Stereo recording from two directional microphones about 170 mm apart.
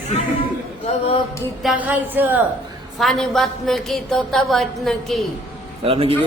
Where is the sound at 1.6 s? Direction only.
10° right (ahead or behind).